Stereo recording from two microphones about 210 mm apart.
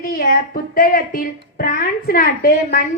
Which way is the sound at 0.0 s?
45° left (ahead or behind).